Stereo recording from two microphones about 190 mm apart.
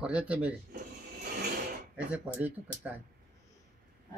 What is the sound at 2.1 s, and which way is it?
Speech, 10° right (ahead or behind).